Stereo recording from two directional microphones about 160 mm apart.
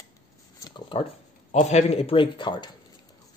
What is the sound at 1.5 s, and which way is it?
A man's voice, 45° left (ahead or behind).